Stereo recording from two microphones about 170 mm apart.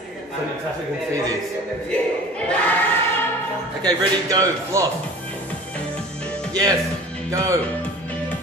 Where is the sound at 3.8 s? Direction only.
20° right (ahead or behind).